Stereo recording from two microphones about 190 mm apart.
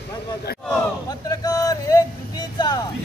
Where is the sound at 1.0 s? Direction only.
20° left (ahead or behind).